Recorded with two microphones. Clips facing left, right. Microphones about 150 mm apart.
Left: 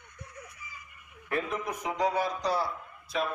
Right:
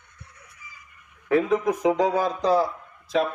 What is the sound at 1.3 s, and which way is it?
Speech, 90° right.